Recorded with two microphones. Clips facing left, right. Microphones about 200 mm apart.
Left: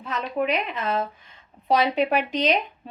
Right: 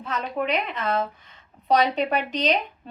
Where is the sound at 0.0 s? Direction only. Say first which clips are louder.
Left 1 dB; 5° left (ahead or behind).